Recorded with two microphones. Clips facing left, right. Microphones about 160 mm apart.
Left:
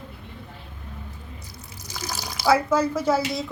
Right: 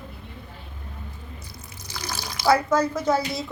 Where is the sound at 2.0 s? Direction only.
40° left (ahead or behind).